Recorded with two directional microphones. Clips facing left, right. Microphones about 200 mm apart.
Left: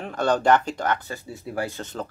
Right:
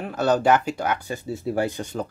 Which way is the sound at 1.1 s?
25° right (ahead or behind).